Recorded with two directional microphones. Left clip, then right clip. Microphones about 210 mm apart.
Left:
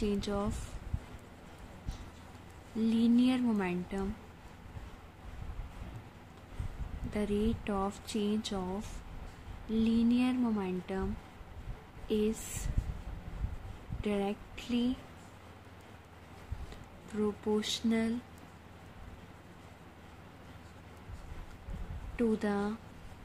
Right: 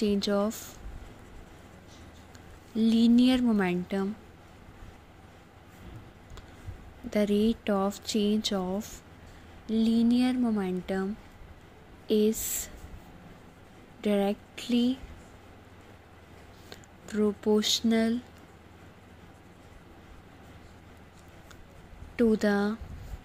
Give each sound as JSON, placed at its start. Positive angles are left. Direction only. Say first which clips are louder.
{"t": 0.0, "sound": "speech", "louder": "right 7 dB", "side_deg": -25}
{"t": 2.8, "sound": "speech", "louder": "right 6 dB", "side_deg": -30}
{"t": 7.1, "sound": "speech", "louder": "right 7 dB", "side_deg": -30}
{"t": 12.1, "sound": "speech", "louder": "right 7 dB", "side_deg": -25}
{"t": 14.0, "sound": "speech", "louder": "right 7 dB", "side_deg": -25}
{"t": 17.1, "sound": "speech", "louder": "right 7 dB", "side_deg": -25}
{"t": 22.1, "sound": "speech", "louder": "right 7 dB", "side_deg": -25}